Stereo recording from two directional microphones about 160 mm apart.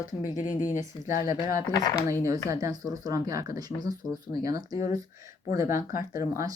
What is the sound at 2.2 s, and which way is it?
Speech, 20° right (ahead or behind).